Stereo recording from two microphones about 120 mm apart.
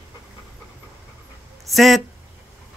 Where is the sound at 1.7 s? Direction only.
Centre (ahead or behind).